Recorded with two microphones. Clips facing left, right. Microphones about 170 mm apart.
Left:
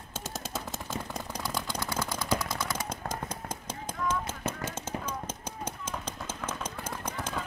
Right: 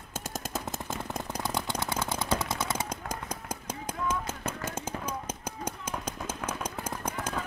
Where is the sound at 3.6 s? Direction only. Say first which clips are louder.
Right 1 dB; 10° right (ahead or behind).